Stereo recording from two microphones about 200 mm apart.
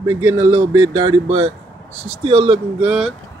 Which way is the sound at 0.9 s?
25° right (ahead or behind).